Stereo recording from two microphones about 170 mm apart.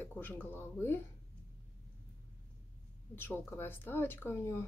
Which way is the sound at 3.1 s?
15° left (ahead or behind).